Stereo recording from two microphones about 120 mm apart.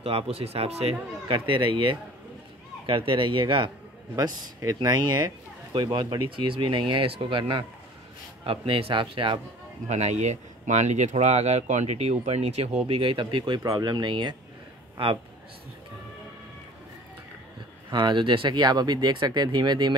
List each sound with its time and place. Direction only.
0.0 s speech: 55° right (ahead or behind)
1.3 s a man's voice: 45° right (ahead or behind)
4.1 s a man's voice: 30° right (ahead or behind); by 9.4 s 45° right (ahead or behind)
9.8 s speech: 70° right (ahead or behind)
12.8 s a man's voice: 45° right (ahead or behind)
13.6 s speech: 30° right (ahead or behind)
17.9 s speech: 40° right (ahead or behind)